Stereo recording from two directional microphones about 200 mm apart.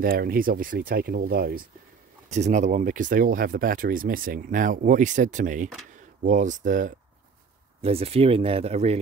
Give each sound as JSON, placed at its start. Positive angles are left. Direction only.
{"t": 0.0, "sound": "speech", "side_deg": -45}
{"t": 2.3, "sound": "speech", "side_deg": -35}
{"t": 7.8, "sound": "speech", "side_deg": -30}